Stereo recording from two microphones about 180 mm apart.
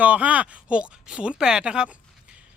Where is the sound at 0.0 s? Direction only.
10° right (ahead or behind).